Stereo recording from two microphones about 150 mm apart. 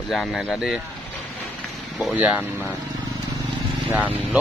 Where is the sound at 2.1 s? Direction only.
10° right (ahead or behind).